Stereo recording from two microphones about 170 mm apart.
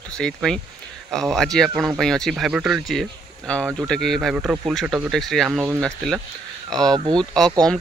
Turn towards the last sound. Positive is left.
turn(degrees=5)  # may be behind; listen again after turning